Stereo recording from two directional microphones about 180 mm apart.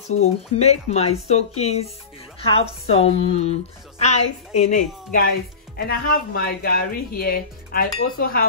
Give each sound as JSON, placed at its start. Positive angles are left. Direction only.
{"t": 0.6, "sound": "a woman's voice", "side_deg": 35}